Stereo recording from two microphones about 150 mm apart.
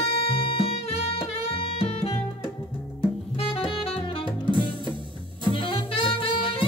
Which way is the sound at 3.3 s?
40° left (ahead or behind).